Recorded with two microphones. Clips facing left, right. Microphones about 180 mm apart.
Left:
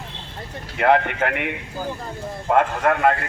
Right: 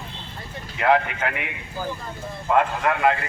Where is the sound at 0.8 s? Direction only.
60° left (ahead or behind).